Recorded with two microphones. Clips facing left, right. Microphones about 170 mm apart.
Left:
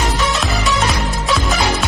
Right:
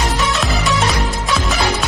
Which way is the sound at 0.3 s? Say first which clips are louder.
Even; centre (ahead or behind).